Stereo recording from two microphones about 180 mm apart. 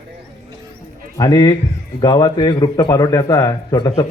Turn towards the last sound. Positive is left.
turn(degrees=20)  # may be behind; listen again after turning